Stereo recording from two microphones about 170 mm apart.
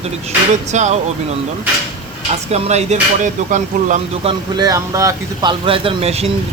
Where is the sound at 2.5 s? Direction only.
40° right (ahead or behind).